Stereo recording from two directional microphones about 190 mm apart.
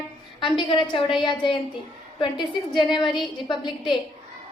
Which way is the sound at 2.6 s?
25° left (ahead or behind).